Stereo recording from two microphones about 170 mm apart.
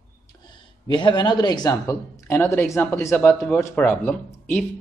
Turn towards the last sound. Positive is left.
turn(degrees=10)  # may be behind; listen again after turning